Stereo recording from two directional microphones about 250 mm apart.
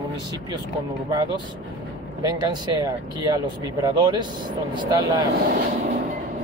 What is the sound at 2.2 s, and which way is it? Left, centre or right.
Speech, centre.